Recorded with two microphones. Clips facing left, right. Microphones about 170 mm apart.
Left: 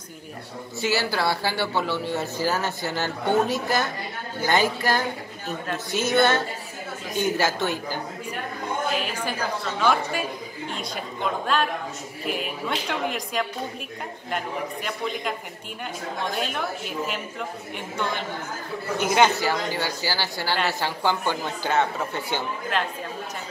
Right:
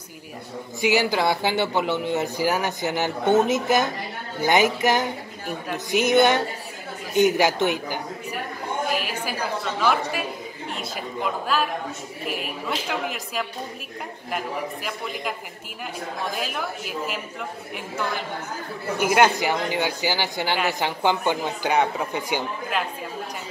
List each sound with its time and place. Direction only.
0.7 s speech: 15° right (ahead or behind)
9.8 s a woman's voice: 5° right (ahead or behind)
11.4 s a woman's voice: 5° right (ahead or behind)